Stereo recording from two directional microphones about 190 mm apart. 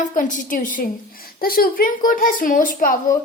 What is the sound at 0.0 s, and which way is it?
A woman's voice, 40° left (ahead or behind).